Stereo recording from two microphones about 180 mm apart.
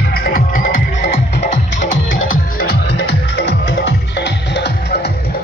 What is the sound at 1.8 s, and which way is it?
Music, 90° left.